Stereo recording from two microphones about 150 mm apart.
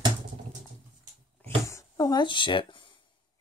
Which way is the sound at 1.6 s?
20° left (ahead or behind).